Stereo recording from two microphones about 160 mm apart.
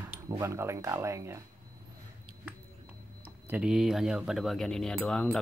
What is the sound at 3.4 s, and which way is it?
Speech, 10° right (ahead or behind).